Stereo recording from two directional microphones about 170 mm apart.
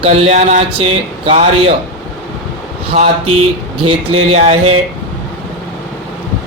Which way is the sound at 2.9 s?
35° right (ahead or behind).